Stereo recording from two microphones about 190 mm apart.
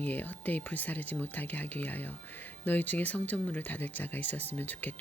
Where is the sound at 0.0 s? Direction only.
10° left (ahead or behind).